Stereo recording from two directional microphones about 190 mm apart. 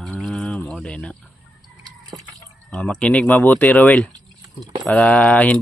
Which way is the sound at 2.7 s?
5° left (ahead or behind).